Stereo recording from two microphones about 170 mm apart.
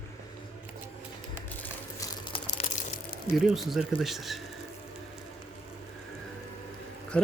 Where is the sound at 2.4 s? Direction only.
45° left (ahead or behind).